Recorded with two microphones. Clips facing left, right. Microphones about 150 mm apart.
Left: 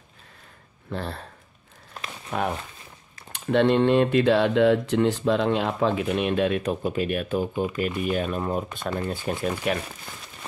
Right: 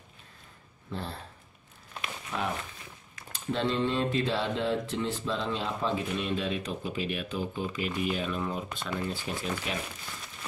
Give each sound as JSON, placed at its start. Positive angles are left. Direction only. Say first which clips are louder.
{"t": 0.9, "sound": "speech", "louder": "left 6 dB", "side_deg": 70}
{"t": 3.3, "sound": "speech", "louder": "left 9 dB", "side_deg": 65}